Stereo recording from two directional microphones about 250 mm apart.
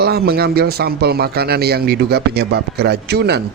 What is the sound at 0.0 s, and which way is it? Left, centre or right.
A man's voice, right.